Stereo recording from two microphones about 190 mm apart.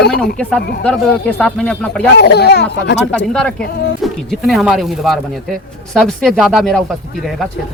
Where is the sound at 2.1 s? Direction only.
60° left (ahead or behind).